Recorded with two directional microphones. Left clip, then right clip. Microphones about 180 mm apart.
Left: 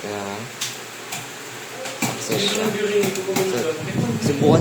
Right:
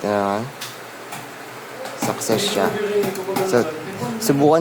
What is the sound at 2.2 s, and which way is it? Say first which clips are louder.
Speech: right 1 dB; 55° right (ahead or behind).